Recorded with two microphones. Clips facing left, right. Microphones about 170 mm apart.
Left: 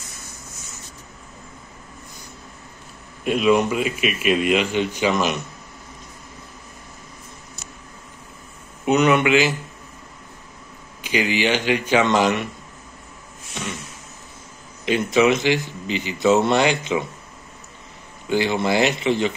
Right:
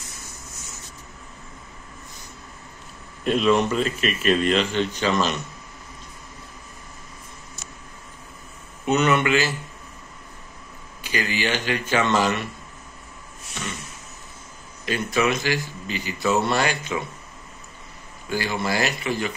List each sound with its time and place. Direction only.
3.3 s speech: 5° left (ahead or behind)
8.8 s speech: 15° left (ahead or behind)
11.0 s speech: 15° left (ahead or behind)
14.9 s a man's voice: 20° left (ahead or behind)
18.3 s a man's voice: 20° left (ahead or behind)